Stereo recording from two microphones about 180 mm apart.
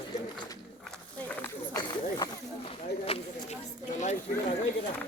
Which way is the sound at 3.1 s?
30° left (ahead or behind).